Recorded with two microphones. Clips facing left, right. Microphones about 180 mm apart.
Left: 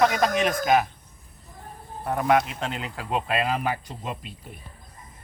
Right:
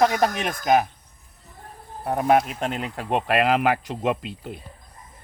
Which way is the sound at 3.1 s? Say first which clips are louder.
Right 5 dB; 70° right (ahead or behind).